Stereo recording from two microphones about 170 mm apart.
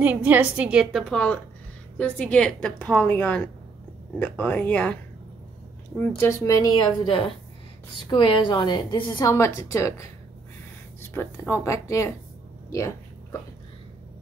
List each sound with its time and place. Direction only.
0.0 s a woman's voice: 10° right (ahead or behind); by 4.9 s 10° left (ahead or behind)
5.9 s a woman's voice: 10° left (ahead or behind)
12.6 s a sound: 20° left (ahead or behind)